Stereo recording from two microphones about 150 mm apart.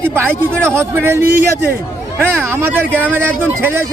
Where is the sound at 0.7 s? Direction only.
15° right (ahead or behind).